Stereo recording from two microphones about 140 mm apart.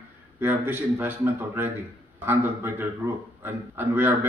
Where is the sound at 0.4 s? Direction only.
15° right (ahead or behind).